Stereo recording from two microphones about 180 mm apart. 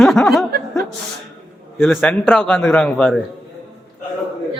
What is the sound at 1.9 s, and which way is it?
A man's voice, 10° left (ahead or behind).